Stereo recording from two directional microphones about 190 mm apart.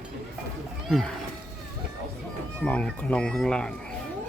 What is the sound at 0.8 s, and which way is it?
Speech, centre (ahead or behind).